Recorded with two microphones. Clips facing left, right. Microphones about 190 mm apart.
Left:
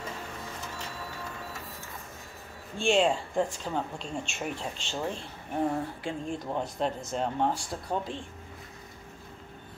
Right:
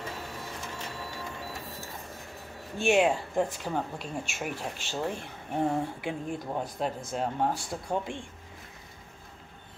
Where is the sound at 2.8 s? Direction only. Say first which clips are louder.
Right 1 dB; 10° right (ahead or behind).